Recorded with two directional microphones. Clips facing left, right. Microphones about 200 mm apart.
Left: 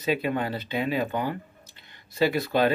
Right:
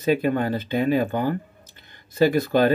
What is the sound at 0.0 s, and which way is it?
Speech, 45° right (ahead or behind).